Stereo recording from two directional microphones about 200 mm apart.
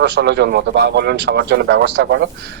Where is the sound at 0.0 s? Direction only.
60° right (ahead or behind).